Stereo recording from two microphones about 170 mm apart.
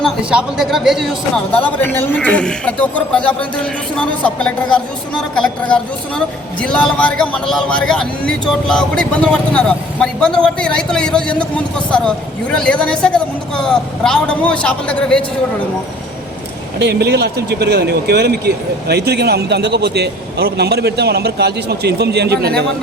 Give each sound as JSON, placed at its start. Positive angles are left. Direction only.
{"t": 0.3, "sound": "a woman's voice", "side_deg": -5}
{"t": 1.5, "sound": "a man's voice", "side_deg": 10}
{"t": 16.7, "sound": "speech", "side_deg": -75}